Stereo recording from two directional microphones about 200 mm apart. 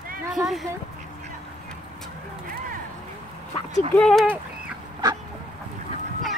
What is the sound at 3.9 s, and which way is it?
Speech, 5° left (ahead or behind).